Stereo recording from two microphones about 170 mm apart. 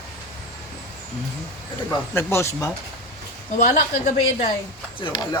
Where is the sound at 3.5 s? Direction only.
45° left (ahead or behind).